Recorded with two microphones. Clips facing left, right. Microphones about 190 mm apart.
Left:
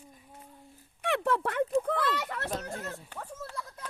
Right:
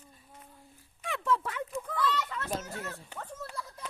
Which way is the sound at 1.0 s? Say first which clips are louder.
Left 3 dB; 65° left (ahead or behind).